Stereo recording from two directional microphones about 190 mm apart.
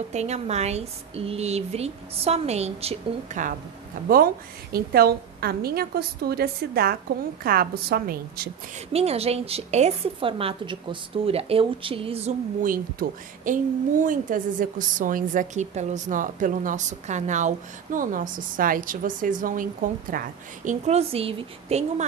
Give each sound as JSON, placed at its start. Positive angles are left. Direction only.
{"t": 0.1, "sound": "a woman's voice", "side_deg": -35}
{"t": 4.7, "sound": "a woman's voice", "side_deg": -55}
{"t": 8.7, "sound": "a woman's voice", "side_deg": -35}